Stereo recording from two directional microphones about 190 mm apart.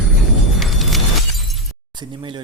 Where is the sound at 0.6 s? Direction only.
Centre (ahead or behind).